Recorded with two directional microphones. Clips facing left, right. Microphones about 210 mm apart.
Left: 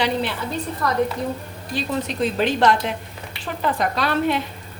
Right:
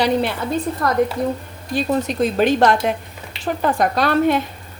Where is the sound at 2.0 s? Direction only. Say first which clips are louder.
Right 4 dB; 45° right (ahead or behind).